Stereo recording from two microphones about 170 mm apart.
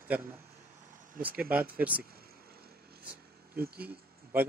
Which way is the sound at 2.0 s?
65° right (ahead or behind).